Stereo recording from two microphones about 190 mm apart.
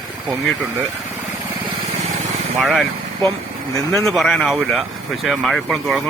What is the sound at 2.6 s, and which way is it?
Speech, centre (ahead or behind).